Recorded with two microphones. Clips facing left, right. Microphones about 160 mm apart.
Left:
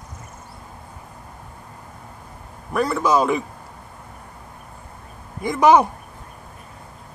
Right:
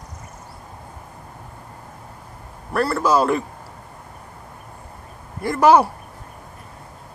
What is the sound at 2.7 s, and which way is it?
Speech, 5° right (ahead or behind).